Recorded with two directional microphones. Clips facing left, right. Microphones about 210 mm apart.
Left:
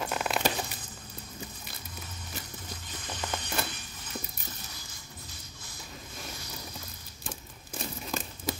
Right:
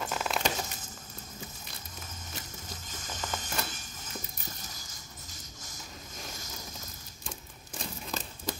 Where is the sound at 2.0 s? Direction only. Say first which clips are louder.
Left 1 dB; 45° right (ahead or behind).